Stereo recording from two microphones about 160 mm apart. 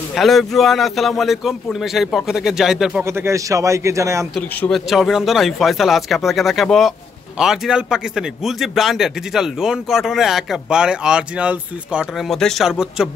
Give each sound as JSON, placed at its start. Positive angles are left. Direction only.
{"t": 0.1, "sound": "a man's voice", "side_deg": 0}
{"t": 3.0, "sound": "a man's voice", "side_deg": -15}
{"t": 4.4, "sound": "a man's voice", "side_deg": 5}